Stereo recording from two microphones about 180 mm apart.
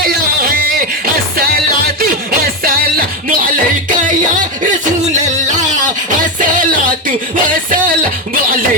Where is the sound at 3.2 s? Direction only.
50° right (ahead or behind).